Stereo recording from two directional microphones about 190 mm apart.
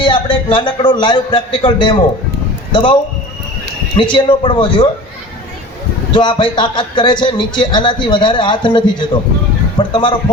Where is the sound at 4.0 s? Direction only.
25° left (ahead or behind).